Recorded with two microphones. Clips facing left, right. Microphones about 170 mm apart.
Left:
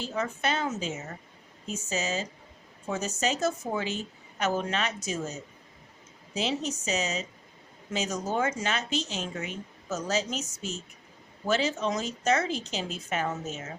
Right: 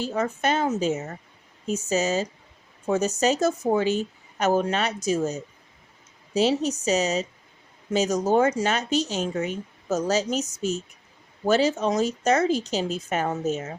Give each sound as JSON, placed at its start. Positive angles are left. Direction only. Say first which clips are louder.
{"t": 0.1, "sound": "speech", "louder": "right 3 dB", "side_deg": -40}